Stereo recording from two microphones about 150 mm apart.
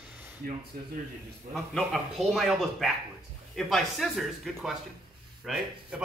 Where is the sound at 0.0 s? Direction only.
5° right (ahead or behind).